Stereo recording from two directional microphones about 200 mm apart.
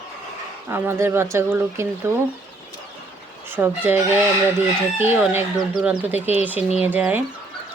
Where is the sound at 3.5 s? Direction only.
10° right (ahead or behind).